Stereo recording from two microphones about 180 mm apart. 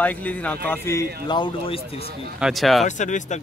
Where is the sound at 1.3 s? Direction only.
25° left (ahead or behind).